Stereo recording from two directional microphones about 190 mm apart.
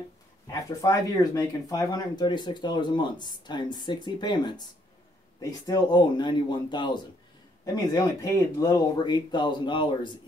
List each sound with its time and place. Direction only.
0.5 s speech: 20° left (ahead or behind)